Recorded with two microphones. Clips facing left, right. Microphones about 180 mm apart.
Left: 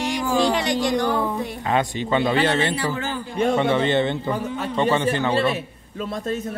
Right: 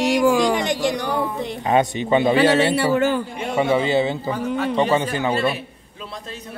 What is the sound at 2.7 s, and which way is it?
Speech, 60° right (ahead or behind).